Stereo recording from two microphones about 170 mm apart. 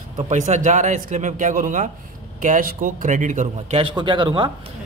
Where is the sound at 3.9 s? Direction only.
30° right (ahead or behind).